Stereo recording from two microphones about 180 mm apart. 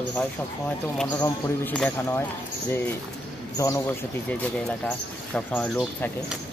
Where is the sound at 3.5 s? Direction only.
15° left (ahead or behind).